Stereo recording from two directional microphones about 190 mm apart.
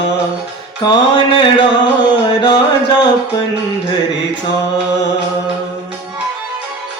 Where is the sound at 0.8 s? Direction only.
20° left (ahead or behind).